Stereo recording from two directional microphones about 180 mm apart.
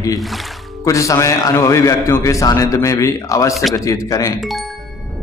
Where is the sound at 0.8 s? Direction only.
15° left (ahead or behind).